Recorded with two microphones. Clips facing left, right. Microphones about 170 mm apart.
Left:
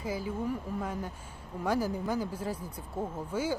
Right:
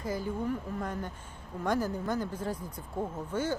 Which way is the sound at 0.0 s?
5° left (ahead or behind).